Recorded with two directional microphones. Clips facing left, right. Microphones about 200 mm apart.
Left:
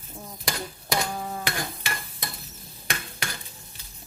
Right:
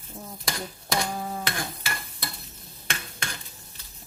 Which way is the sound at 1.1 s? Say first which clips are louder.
Right 1 dB; centre (ahead or behind).